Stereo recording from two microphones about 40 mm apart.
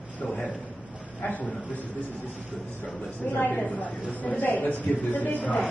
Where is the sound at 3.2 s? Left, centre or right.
Left.